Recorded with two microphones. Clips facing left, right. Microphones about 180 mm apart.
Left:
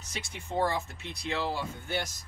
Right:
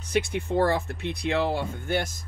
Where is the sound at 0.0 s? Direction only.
60° right (ahead or behind).